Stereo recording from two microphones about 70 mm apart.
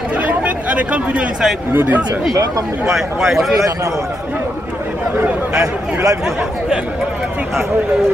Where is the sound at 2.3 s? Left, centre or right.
Right.